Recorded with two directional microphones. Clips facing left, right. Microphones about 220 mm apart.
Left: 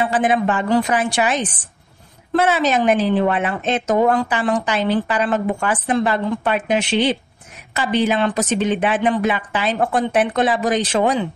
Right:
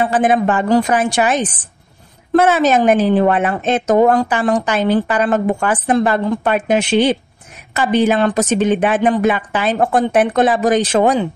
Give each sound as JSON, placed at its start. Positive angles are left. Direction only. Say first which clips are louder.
{"t": 0.0, "sound": "a woman's voice", "louder": "right 3 dB", "side_deg": -50}